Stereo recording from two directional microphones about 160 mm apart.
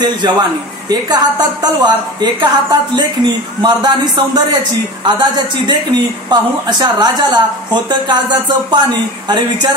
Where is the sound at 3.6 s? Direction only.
25° right (ahead or behind).